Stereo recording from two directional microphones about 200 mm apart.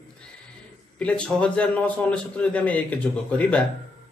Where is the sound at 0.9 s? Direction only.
5° left (ahead or behind).